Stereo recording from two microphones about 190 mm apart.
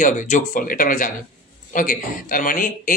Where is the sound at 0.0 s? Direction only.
40° left (ahead or behind).